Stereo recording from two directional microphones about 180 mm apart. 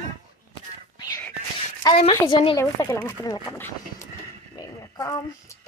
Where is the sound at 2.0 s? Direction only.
30° left (ahead or behind); by 4.0 s 10° left (ahead or behind).